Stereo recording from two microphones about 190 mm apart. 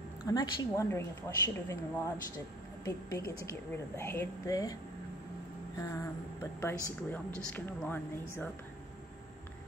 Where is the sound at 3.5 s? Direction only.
15° left (ahead or behind).